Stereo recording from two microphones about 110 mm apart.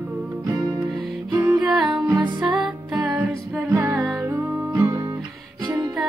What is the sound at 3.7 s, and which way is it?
Music, 20° right (ahead or behind).